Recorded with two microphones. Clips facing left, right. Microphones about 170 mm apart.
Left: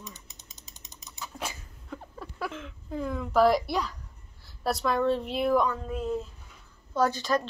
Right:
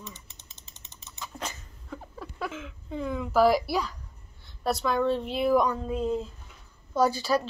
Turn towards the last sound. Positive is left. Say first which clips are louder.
# right 2 dB
turn(degrees=-10)  # may be behind; listen again after turning